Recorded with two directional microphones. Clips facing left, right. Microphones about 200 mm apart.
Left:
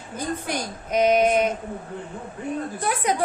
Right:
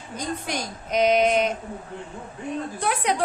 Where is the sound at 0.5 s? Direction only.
55° left (ahead or behind).